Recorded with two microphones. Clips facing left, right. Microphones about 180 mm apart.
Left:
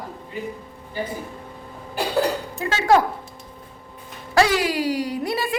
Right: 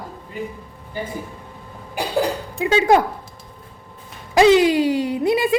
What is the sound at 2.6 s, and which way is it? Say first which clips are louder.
Speech: right 3 dB; 15° right (ahead or behind).